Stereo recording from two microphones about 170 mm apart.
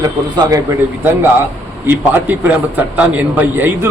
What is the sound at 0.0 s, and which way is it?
Speech, 20° right (ahead or behind).